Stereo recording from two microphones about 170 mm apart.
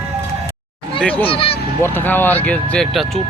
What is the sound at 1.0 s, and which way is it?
Speech, 5° left (ahead or behind).